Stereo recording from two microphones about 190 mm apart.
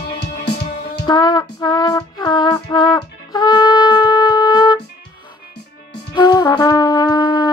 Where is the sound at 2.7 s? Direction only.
20° left (ahead or behind).